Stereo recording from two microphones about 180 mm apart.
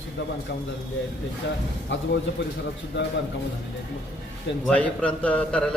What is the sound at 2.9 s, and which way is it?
Speech, 75° left (ahead or behind).